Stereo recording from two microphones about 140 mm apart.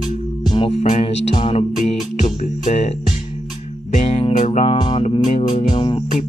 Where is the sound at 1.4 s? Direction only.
40° left (ahead or behind).